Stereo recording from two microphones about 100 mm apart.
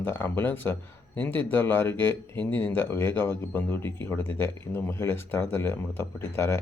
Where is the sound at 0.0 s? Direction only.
20° left (ahead or behind).